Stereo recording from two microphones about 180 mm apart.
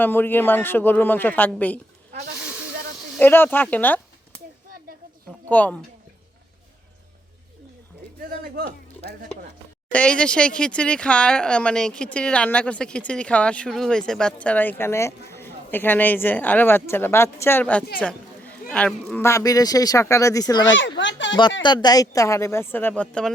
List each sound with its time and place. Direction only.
0.0 s speech: 10° left (ahead or behind)
3.2 s speech: 10° left (ahead or behind)
5.5 s speech: 10° left (ahead or behind)
8.5 s music: 65° right (ahead or behind)
9.9 s speech: 5° left (ahead or behind)
19.2 s speech: 15° left (ahead or behind)
21.0 s speech: 90° left
21.6 s speech: 25° left (ahead or behind); by 23.3 s 5° left (ahead or behind)